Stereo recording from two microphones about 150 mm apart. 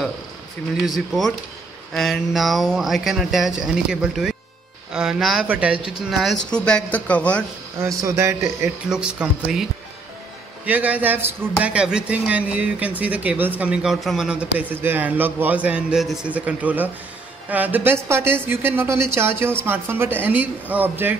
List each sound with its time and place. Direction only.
0.8 s speech: centre (ahead or behind)
7.8 s a man's voice: 20° right (ahead or behind)
8.8 s speech: 5° right (ahead or behind)